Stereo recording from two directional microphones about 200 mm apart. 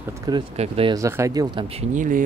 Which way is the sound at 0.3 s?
25° right (ahead or behind).